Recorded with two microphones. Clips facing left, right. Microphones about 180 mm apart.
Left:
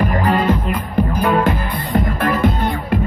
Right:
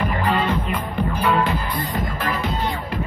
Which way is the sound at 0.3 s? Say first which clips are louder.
Left 4 dB; 45° left (ahead or behind).